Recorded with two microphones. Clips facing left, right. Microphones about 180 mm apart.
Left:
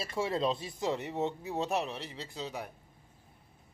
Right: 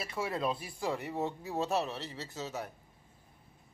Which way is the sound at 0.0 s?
25° left (ahead or behind).